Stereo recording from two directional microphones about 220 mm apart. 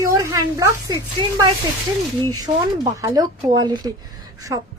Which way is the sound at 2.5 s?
30° right (ahead or behind).